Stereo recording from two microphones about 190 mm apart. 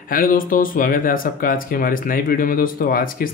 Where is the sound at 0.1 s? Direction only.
50° left (ahead or behind).